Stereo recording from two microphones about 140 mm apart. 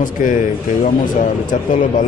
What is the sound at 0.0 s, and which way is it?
Speech, 75° left (ahead or behind).